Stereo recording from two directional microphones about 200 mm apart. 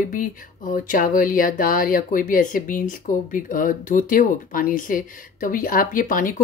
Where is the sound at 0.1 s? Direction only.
45° left (ahead or behind).